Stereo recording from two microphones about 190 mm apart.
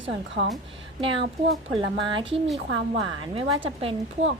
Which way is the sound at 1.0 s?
25° right (ahead or behind).